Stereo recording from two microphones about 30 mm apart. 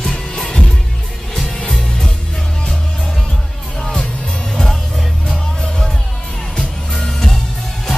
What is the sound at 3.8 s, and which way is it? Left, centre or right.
Music, centre.